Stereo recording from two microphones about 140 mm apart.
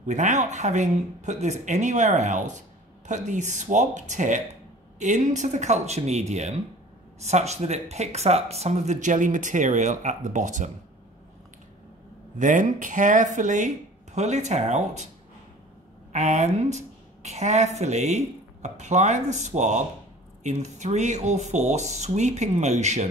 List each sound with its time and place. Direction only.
0.0 s speech: 60° right (ahead or behind)
12.4 s speech: 65° right (ahead or behind)
16.1 s a woman's voice: 55° right (ahead or behind)